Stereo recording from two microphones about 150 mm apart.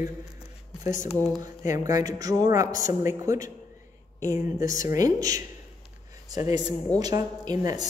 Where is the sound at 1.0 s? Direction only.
15° left (ahead or behind).